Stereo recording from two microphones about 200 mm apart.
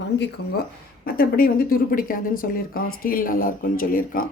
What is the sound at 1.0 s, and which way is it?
Speech, 45° left (ahead or behind).